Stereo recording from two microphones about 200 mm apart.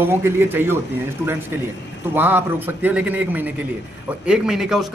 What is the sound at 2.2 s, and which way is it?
A man's voice, 10° right (ahead or behind).